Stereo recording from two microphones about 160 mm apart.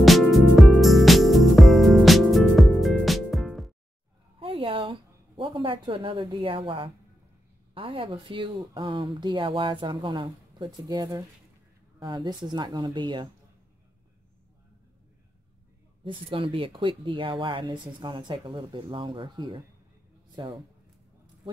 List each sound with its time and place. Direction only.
0.0 s music: centre (ahead or behind)
4.4 s a sound: 35° right (ahead or behind)
7.7 s speech: 35° right (ahead or behind)
16.0 s speech: 35° right (ahead or behind)